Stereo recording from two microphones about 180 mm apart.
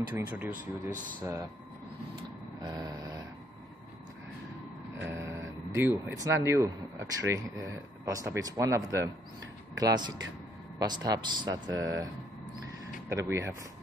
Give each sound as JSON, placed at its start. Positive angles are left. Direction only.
{"t": 0.1, "sound": "speech", "side_deg": -10}
{"t": 0.5, "sound": "speech", "side_deg": -45}
{"t": 1.2, "sound": "speech", "side_deg": -15}
{"t": 2.6, "sound": "vehicle", "side_deg": -25}
{"t": 5.0, "sound": "speech", "side_deg": -15}
{"t": 13.1, "sound": "speech", "side_deg": -15}